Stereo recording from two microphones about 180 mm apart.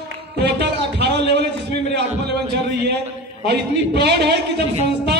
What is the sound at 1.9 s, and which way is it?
A man's voice, 65° right (ahead or behind).